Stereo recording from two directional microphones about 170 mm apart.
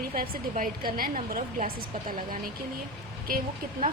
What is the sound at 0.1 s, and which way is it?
A woman's voice, 55° right (ahead or behind).